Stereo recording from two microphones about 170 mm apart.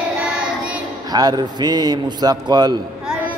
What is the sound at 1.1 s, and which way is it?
Speech, 25° right (ahead or behind).